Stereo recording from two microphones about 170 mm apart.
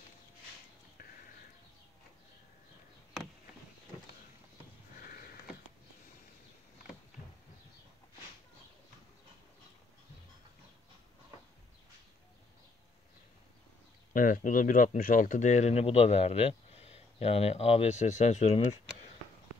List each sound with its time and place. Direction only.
4.9 s sniff: 60° left (ahead or behind)
14.1 s speech: 50° left (ahead or behind)